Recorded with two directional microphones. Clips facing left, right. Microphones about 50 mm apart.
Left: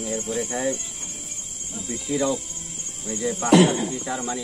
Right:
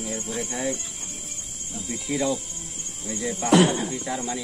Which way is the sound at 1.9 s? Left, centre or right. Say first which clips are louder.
Left 2 dB; centre.